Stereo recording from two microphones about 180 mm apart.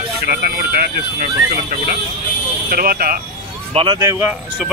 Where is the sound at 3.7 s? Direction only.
30° right (ahead or behind).